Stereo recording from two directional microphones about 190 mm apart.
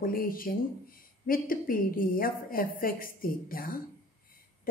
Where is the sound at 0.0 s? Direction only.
50° left (ahead or behind).